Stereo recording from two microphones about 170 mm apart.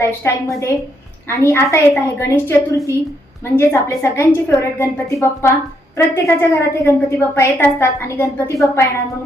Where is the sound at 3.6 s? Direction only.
15° left (ahead or behind).